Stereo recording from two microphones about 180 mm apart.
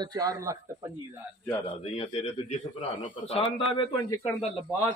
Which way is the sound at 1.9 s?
35° left (ahead or behind).